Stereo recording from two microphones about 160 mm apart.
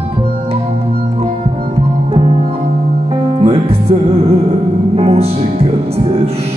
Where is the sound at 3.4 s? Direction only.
40° right (ahead or behind).